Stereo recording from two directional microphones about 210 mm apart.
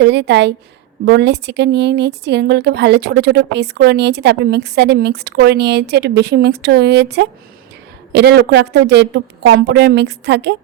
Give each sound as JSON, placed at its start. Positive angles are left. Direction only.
{"t": 0.0, "sound": "a woman's voice", "side_deg": -55}